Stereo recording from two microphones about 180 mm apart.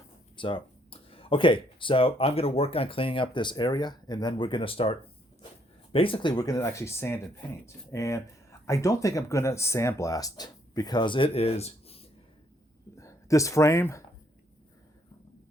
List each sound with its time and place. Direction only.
0.3 s speech: 30° left (ahead or behind)
13.0 s speech: 15° left (ahead or behind)